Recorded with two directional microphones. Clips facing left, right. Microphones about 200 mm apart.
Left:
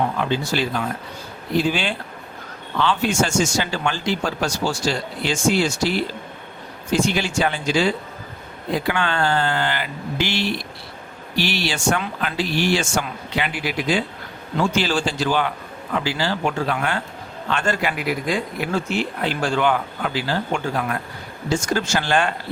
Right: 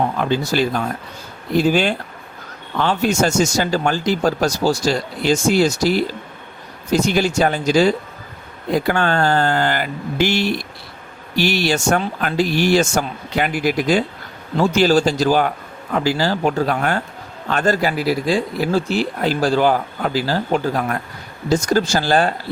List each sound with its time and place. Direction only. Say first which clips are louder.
0.2 s speech: right 4 dB; 45° right (ahead or behind)